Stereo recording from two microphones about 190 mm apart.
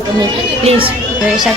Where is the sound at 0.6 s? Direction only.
30° right (ahead or behind).